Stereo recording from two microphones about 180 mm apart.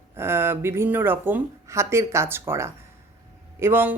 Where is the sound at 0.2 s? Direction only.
15° right (ahead or behind).